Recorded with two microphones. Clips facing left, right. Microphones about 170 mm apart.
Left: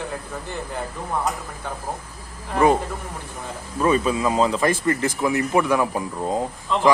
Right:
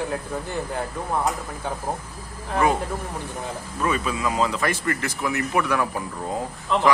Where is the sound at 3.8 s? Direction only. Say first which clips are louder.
Left 5 dB; 30° left (ahead or behind).